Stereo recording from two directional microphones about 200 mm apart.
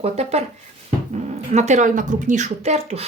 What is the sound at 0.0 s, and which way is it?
A woman's voice, 30° right (ahead or behind).